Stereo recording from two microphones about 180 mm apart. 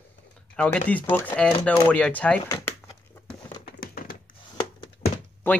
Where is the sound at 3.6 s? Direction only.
55° left (ahead or behind).